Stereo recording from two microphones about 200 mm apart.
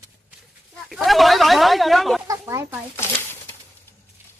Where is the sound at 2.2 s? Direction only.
15° right (ahead or behind).